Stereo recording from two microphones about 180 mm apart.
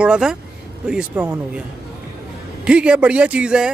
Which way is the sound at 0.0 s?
5° right (ahead or behind).